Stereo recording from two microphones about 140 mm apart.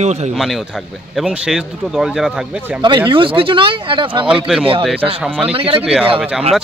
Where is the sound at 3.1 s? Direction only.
40° right (ahead or behind).